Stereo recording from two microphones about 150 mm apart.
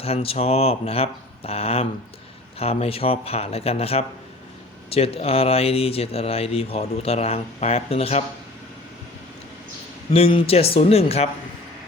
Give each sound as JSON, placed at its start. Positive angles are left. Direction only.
{"t": 0.0, "sound": "speech", "side_deg": 40}
{"t": 10.1, "sound": "speech", "side_deg": 40}